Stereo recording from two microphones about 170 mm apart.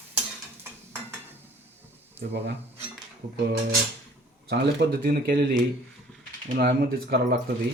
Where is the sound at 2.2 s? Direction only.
80° right.